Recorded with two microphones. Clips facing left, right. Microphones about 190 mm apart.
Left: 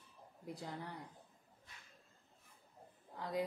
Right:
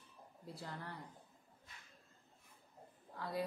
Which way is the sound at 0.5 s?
15° left (ahead or behind).